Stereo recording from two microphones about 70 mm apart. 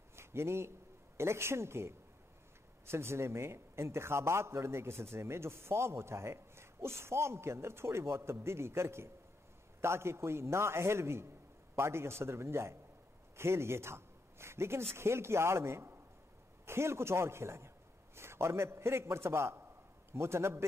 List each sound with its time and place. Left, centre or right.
0.1 s a man's voice: right